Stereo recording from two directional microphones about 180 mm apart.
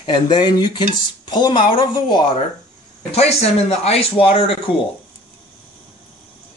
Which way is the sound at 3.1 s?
35° left (ahead or behind).